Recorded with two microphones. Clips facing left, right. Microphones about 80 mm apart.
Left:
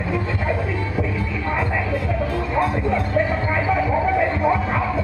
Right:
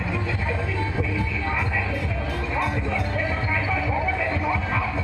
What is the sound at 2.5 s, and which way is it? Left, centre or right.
Music, left.